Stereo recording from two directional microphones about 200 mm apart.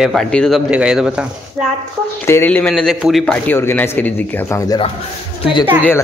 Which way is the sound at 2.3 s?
10° left (ahead or behind).